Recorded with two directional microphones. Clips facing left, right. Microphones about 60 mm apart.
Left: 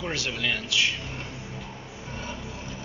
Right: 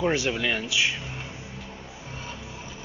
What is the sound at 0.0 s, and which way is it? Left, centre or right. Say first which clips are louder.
Speech: right 5 dB; right.